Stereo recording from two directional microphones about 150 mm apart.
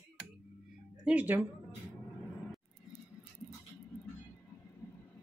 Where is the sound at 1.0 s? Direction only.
10° right (ahead or behind).